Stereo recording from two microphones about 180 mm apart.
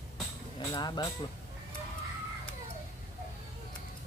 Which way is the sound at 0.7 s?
20° left (ahead or behind).